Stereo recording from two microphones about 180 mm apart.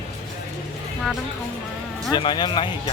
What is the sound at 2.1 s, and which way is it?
Speech, 25° left (ahead or behind).